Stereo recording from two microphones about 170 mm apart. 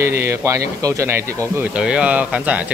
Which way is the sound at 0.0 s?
15° right (ahead or behind).